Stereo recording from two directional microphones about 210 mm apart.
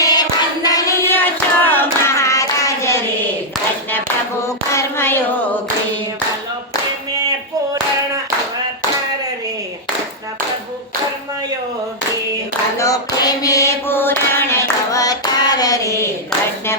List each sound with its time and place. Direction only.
0.0 s child singing: 20° left (ahead or behind)
4.4 s hands: 15° left (ahead or behind)
12.8 s a sound: 15° left (ahead or behind)